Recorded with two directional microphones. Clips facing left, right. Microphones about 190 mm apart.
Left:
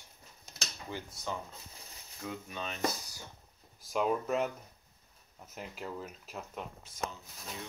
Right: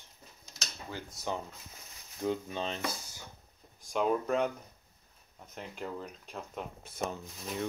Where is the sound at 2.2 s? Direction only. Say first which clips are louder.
Right 8 dB; 30° right (ahead or behind).